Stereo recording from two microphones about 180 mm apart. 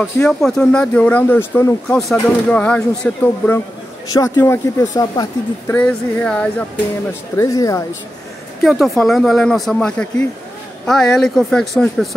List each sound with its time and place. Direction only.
0.0 s speech: centre (ahead or behind)
2.0 s speech: centre (ahead or behind); by 5.8 s 20° left (ahead or behind)
5.8 s speech: 5° left (ahead or behind)
7.3 s speech: 20° left (ahead or behind)
8.6 s speech: centre (ahead or behind)